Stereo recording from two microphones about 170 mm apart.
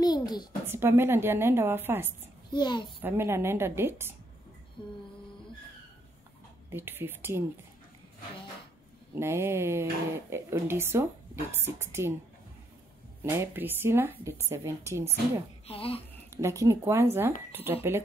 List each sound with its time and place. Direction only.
0.0 s a sound: 25° left (ahead or behind)
0.7 s speech: 15° right (ahead or behind)
2.5 s a child's voice: 25° left (ahead or behind)
3.0 s speech: 15° right (ahead or behind)
4.8 s a child's voice: 25° left (ahead or behind)
6.7 s speech: 10° right (ahead or behind)
9.2 s speech: 15° right (ahead or behind)
13.2 s speech: 15° right (ahead or behind)
15.6 s speech: 35° left (ahead or behind)
16.3 s speech: 15° right (ahead or behind)